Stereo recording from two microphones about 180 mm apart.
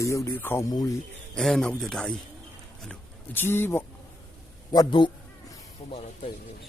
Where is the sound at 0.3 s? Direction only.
10° left (ahead or behind).